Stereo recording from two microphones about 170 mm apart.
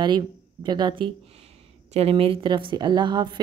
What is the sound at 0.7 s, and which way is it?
A woman's voice, 25° right (ahead or behind).